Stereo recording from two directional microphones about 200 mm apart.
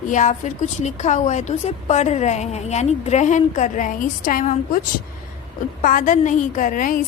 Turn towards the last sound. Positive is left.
turn(degrees=40)  # may be behind; listen again after turning